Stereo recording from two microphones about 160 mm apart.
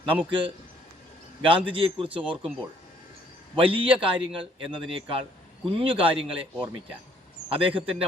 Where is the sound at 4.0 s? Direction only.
35° right (ahead or behind).